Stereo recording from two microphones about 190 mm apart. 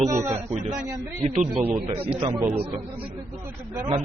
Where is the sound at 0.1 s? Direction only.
15° right (ahead or behind).